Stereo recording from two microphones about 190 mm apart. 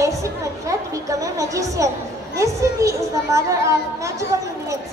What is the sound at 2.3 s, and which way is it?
Children playing, 15° right (ahead or behind).